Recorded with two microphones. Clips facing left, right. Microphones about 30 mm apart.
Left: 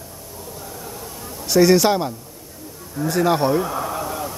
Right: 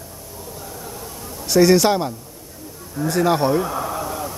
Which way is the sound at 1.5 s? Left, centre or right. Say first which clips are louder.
Even; centre.